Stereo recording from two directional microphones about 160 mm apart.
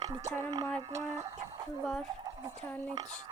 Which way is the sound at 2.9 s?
25° right (ahead or behind).